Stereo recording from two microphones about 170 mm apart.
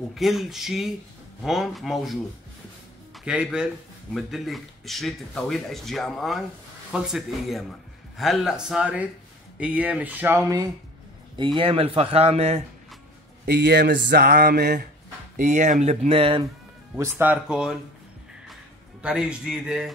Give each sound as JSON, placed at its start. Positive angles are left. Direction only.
{"t": 0.1, "sound": "speech", "side_deg": 0}
{"t": 3.3, "sound": "speech", "side_deg": -5}
{"t": 11.3, "sound": "speech", "side_deg": -30}
{"t": 13.5, "sound": "speech", "side_deg": -80}
{"t": 15.3, "sound": "speech", "side_deg": -45}
{"t": 16.9, "sound": "speech", "side_deg": -10}
{"t": 19.0, "sound": "speech", "side_deg": -5}